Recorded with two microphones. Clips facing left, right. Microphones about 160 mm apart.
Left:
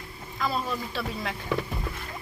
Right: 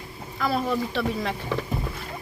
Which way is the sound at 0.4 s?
65° right (ahead or behind).